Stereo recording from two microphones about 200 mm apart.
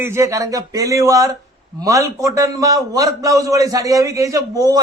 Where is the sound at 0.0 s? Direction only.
15° right (ahead or behind).